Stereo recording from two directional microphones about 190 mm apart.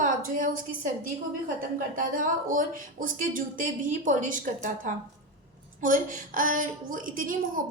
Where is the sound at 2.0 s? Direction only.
45° right (ahead or behind).